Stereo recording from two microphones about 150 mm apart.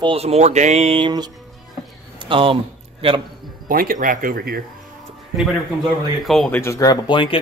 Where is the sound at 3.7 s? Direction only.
75° right (ahead or behind).